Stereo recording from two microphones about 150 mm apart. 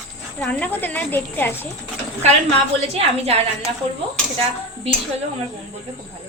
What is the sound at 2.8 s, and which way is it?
Speech, 45° right (ahead or behind).